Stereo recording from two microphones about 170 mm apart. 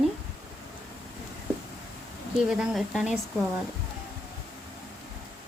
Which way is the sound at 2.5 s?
5° right (ahead or behind).